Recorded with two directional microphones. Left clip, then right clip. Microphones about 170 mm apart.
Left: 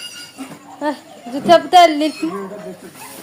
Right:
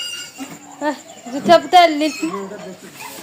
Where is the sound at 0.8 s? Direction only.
5° left (ahead or behind).